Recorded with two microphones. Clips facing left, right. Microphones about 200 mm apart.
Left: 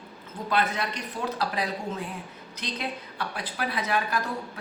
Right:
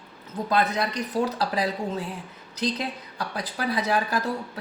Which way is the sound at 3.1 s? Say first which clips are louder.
Right 2 dB; 40° right (ahead or behind).